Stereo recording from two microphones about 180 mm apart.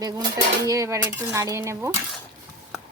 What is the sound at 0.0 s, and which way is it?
Dishes, 20° right (ahead or behind).